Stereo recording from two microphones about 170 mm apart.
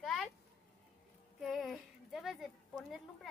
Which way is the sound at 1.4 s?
Centre (ahead or behind).